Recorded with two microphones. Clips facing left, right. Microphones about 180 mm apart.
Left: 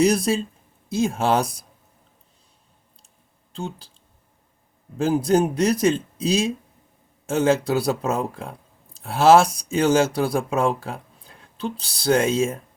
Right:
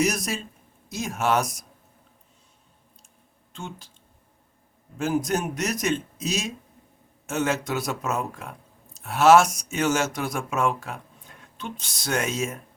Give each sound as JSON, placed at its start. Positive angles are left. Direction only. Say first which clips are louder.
{"t": 0.0, "sound": "speech", "louder": "left 7 dB", "side_deg": 30}
{"t": 3.5, "sound": "speech", "louder": "left 6 dB", "side_deg": 35}
{"t": 4.9, "sound": "speech", "louder": "left 6 dB", "side_deg": 30}